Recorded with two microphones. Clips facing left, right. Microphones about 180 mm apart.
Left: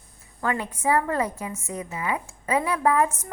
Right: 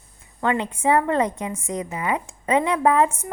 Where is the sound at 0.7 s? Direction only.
15° right (ahead or behind).